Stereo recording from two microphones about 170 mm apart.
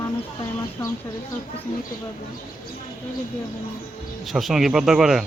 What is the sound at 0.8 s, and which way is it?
Speech, 15° left (ahead or behind).